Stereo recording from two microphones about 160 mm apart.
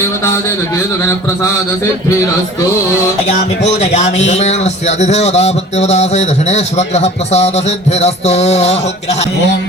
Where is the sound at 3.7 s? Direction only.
45° left (ahead or behind).